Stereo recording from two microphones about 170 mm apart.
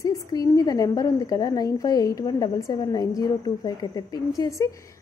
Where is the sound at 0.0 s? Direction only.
20° left (ahead or behind).